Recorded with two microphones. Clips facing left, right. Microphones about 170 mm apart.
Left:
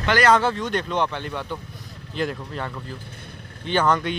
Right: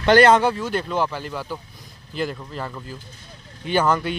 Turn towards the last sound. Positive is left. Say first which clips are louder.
# right 1 dB
turn(degrees=-5)  # may be behind; listen again after turning